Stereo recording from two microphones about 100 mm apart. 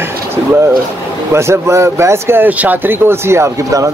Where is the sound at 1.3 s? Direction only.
30° right (ahead or behind).